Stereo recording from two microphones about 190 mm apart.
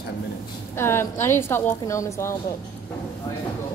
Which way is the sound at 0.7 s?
15° left (ahead or behind).